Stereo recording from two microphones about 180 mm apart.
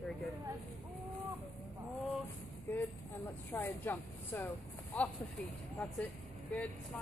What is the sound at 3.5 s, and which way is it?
Speech, 15° left (ahead or behind).